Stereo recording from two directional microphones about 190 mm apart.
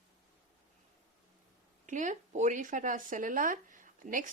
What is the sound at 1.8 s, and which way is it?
A woman's voice, 40° right (ahead or behind).